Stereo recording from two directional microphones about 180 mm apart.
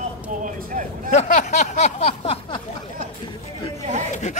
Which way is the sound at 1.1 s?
40° left (ahead or behind).